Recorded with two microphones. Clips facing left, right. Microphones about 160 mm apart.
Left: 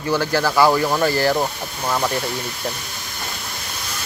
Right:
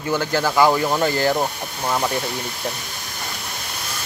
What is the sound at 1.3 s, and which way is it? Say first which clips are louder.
Speech: left 1 dB; 10° right (ahead or behind).